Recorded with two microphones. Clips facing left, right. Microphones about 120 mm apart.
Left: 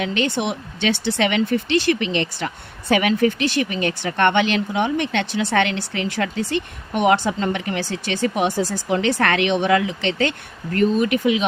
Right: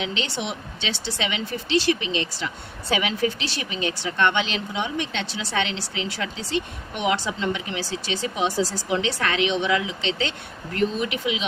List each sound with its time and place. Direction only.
0.0 s speech: 55° left (ahead or behind)
10.8 s speech: 45° left (ahead or behind)